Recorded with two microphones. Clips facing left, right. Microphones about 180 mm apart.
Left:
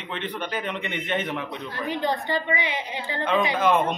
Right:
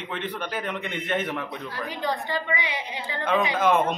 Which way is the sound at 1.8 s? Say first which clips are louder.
Left 4 dB; 20° left (ahead or behind).